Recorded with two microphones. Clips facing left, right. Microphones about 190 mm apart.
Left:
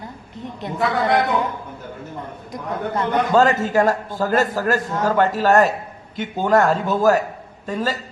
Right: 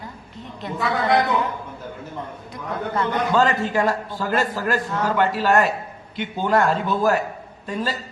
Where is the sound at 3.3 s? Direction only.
45° left (ahead or behind).